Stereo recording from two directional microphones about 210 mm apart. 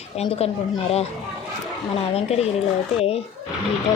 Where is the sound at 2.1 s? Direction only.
30° left (ahead or behind).